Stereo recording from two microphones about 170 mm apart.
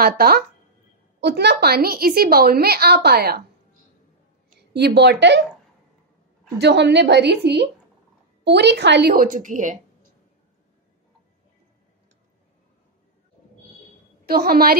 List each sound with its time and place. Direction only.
0.0 s a woman's voice: 60° right (ahead or behind)
1.2 s a woman's voice: 75° right (ahead or behind)
4.7 s a woman's voice: 80° right
6.6 s a woman's voice: 85° right; by 9.8 s 50° right (ahead or behind)
14.2 s a woman's voice: 65° right (ahead or behind)